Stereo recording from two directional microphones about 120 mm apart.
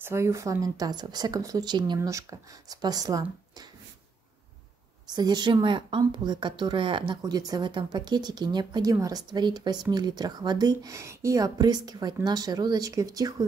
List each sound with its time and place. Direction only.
0.0 s speech: 25° right (ahead or behind)
2.0 s speech: 25° right (ahead or behind)
5.1 s speech: 35° right (ahead or behind)
7.2 s speech: 30° right (ahead or behind)